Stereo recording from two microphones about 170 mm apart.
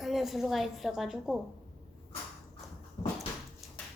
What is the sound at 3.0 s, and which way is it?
Dog, 20° left (ahead or behind).